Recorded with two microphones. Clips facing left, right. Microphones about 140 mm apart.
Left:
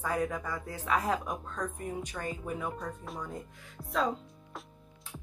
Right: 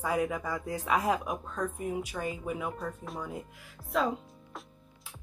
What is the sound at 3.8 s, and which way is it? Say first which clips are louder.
Speech: left 5 dB; 20° left (ahead or behind).